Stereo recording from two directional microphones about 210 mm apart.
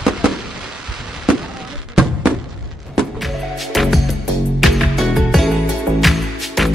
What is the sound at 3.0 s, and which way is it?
Music, centre (ahead or behind).